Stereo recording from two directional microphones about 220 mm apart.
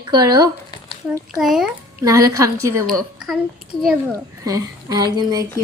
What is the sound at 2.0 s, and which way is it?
Speech, 15° right (ahead or behind).